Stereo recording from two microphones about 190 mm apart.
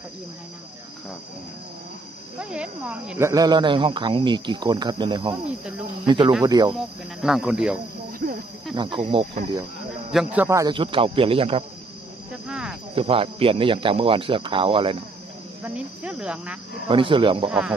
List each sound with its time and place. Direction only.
2.5 s speech: 5° right (ahead or behind); by 6.7 s 20° right (ahead or behind)
6.7 s speech: centre (ahead or behind)
8.7 s speech: 25° right (ahead or behind)
10.1 s speech: 10° right (ahead or behind); by 11.6 s 30° right (ahead or behind)
12.4 s speech: 5° right (ahead or behind)
12.9 s speech: 30° right (ahead or behind)
15.6 s speech: 5° right (ahead or behind)
16.8 s speech: 25° right (ahead or behind)
17.5 s speech: 5° right (ahead or behind)